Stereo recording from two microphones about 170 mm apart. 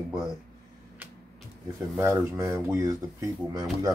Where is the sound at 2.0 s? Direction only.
15° right (ahead or behind).